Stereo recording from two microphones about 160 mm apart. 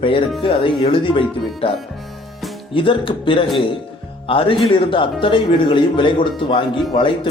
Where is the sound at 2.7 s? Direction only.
35° left (ahead or behind).